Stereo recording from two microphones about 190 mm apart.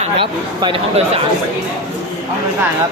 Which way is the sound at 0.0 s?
25° right (ahead or behind).